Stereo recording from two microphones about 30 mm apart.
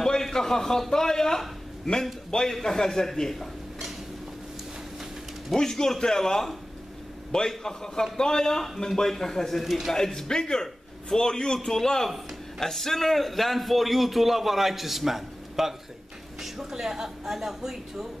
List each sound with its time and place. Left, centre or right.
0.0 s a man's voice: centre
2.5 s speech: centre
5.6 s a man's voice: centre